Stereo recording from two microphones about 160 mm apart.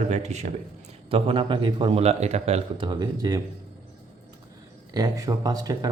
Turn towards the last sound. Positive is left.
turn(degrees=-20)  # may be behind; listen again after turning